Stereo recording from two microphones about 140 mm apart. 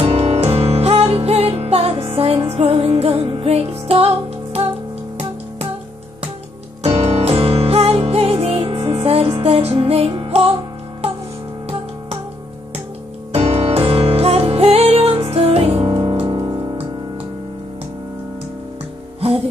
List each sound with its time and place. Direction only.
0.0 s music: 45° right (ahead or behind)
6.8 s music: 45° right (ahead or behind)
13.3 s music: 45° right (ahead or behind)